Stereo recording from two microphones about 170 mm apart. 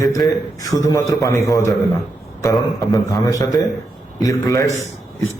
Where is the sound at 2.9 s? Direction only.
20° left (ahead or behind).